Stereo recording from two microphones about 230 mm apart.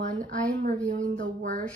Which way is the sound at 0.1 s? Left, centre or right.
Right.